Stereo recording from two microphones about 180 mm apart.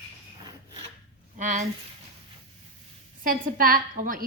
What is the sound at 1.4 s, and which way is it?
Speech, 45° right (ahead or behind).